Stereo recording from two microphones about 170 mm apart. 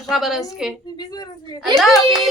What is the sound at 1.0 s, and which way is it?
Speech, 25° left (ahead or behind).